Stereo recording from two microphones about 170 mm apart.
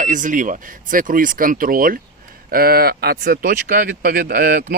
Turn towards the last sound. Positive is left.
turn(degrees=-65)  # may be behind; listen again after turning